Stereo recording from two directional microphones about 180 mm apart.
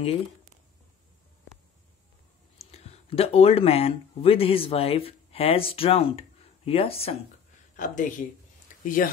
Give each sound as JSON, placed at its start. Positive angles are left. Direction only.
{"t": 2.6, "sound": "speech", "side_deg": 35}
{"t": 7.7, "sound": "speech", "side_deg": 45}